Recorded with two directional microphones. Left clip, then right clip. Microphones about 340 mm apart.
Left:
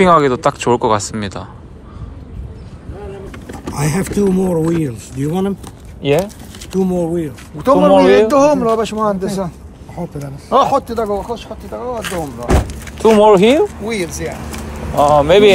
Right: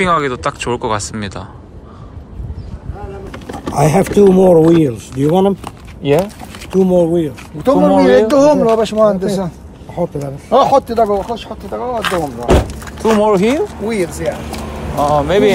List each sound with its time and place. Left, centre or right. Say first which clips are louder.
0.0 s speech: left 4 dB; centre
3.3 s speech: right 4 dB; centre
13.3 s speech: left 4 dB; centre
13.8 s speech: right 3 dB; centre
15.0 s speech: left 3 dB; left